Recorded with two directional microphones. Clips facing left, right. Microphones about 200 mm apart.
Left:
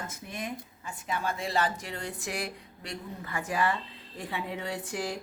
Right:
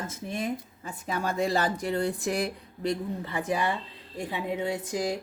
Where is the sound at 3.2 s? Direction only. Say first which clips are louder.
Even; 20° right (ahead or behind).